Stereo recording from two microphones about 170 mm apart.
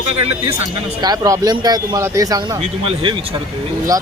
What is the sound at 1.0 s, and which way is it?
Speech, 20° right (ahead or behind).